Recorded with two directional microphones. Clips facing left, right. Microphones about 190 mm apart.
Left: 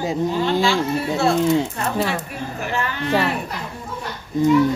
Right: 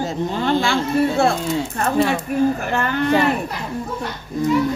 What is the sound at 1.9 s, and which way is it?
Speech, centre (ahead or behind).